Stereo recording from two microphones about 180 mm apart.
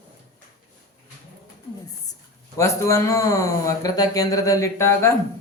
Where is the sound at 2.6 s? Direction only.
15° left (ahead or behind).